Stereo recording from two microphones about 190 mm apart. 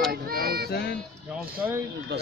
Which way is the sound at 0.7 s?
60° left (ahead or behind).